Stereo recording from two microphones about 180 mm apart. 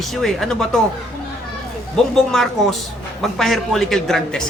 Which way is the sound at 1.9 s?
Centre (ahead or behind).